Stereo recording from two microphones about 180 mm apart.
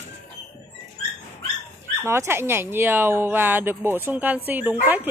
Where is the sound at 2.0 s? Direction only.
15° right (ahead or behind).